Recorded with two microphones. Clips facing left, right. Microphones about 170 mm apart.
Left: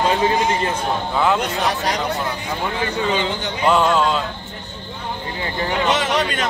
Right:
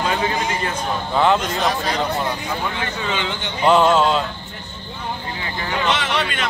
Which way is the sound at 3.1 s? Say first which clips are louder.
Left 4 dB; 35° left (ahead or behind).